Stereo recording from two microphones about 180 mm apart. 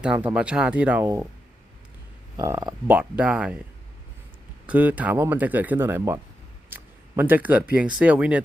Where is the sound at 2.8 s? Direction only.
5° right (ahead or behind).